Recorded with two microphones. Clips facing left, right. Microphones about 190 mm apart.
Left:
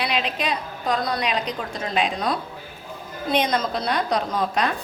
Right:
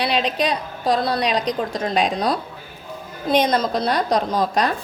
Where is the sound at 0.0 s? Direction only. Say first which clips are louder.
Right 5 dB; 35° right (ahead or behind).